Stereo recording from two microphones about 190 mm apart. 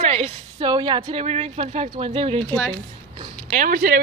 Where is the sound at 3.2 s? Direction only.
45° right (ahead or behind).